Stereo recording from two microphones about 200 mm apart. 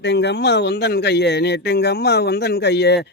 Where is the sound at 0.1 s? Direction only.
55° left (ahead or behind).